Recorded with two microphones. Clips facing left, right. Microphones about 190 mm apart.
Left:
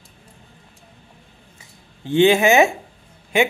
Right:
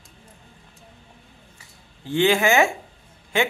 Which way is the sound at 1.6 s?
20° left (ahead or behind).